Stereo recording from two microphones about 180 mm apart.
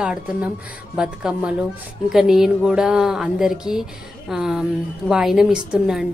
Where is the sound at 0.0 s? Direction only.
5° right (ahead or behind).